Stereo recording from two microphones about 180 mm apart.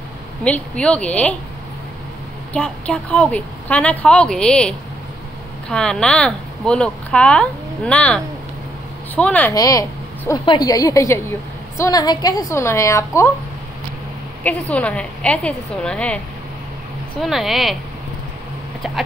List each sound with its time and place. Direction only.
0.4 s a woman's voice: 5° left (ahead or behind)
2.5 s a woman's voice: 5° left (ahead or behind)
9.5 s a woman's voice: 20° left (ahead or behind)
14.4 s a woman's voice: 5° left (ahead or behind)
17.2 s speech: centre (ahead or behind)